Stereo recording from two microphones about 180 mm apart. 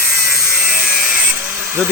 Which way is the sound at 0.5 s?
5° right (ahead or behind).